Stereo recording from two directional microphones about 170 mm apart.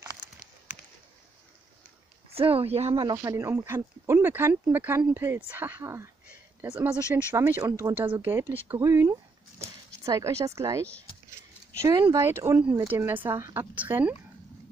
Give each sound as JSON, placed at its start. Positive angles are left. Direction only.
{"t": 2.3, "sound": "speech", "side_deg": -35}